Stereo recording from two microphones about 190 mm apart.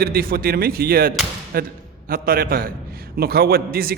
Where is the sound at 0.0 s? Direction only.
50° right (ahead or behind).